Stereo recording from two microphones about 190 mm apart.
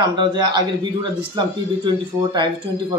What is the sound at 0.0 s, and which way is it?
Speech, 25° right (ahead or behind).